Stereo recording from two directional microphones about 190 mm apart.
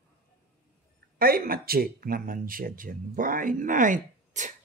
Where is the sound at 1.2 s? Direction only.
50° right (ahead or behind).